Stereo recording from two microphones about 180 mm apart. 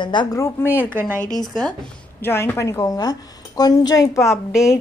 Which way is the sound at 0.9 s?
10° right (ahead or behind).